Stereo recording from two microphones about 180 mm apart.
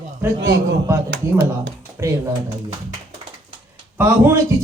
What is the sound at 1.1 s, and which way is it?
Speech, 70° right (ahead or behind).